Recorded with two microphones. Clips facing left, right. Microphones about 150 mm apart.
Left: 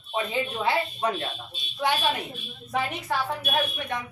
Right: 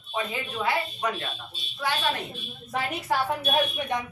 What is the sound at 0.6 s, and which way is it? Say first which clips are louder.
Speech: even; 30° left (ahead or behind).